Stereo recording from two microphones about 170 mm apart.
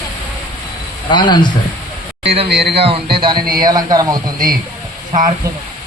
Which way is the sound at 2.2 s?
35° right (ahead or behind).